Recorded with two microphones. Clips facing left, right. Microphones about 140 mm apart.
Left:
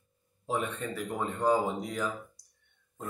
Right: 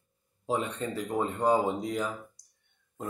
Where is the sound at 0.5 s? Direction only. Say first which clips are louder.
Right 2 dB; 25° right (ahead or behind).